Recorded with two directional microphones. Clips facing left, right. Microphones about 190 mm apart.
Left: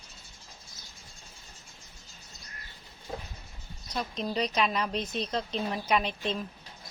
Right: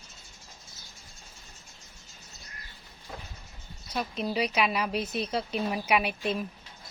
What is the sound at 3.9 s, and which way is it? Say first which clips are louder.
A woman's voice: right 1 dB; 5° right (ahead or behind).